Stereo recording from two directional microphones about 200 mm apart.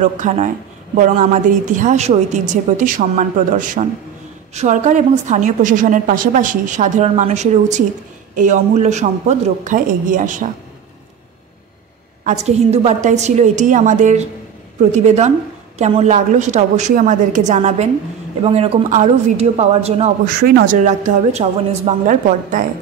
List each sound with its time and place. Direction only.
0.0 s a woman's voice: 35° right (ahead or behind)
12.3 s a woman's voice: 35° right (ahead or behind)
20.3 s speech: 50° right (ahead or behind)
20.8 s a woman's voice: 35° right (ahead or behind)